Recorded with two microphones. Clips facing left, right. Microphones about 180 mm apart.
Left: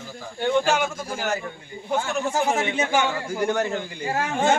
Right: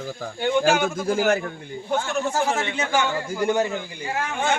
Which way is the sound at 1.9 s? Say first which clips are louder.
Even; 15° left (ahead or behind).